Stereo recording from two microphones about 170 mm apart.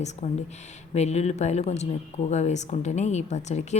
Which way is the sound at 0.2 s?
45° left (ahead or behind).